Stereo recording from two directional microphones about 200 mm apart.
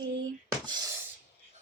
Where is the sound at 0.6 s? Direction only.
20° right (ahead or behind).